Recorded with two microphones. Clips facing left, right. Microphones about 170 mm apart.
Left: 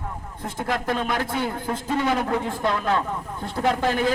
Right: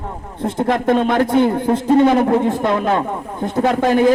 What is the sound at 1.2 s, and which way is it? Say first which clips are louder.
Speech: right 12 dB; 55° right (ahead or behind).